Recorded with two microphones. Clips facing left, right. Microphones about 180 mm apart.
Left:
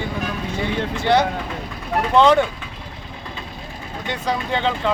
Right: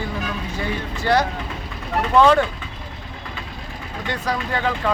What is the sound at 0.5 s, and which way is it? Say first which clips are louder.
A man's voice: left 3 dB; 25° left (ahead or behind).